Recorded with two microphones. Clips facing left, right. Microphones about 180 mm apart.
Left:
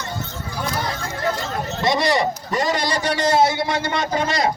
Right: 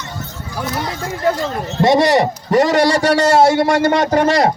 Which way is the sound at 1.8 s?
65° right (ahead or behind).